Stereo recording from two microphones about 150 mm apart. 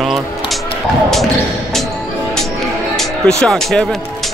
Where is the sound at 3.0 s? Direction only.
5° left (ahead or behind).